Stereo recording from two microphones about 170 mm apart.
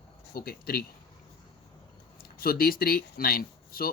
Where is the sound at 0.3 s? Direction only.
60° left (ahead or behind).